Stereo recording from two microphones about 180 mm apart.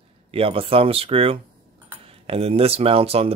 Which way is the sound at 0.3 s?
30° right (ahead or behind).